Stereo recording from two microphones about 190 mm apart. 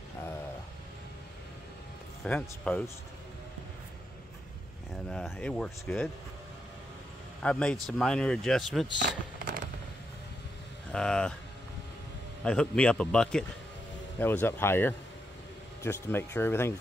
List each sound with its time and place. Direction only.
2.2 s speech: 5° left (ahead or behind)
5.1 s speech: 5° left (ahead or behind)
7.4 s speech: 5° left (ahead or behind)
9.4 s a sound: 50° right (ahead or behind)
10.9 s speech: 5° left (ahead or behind)
12.4 s speech: 5° left (ahead or behind)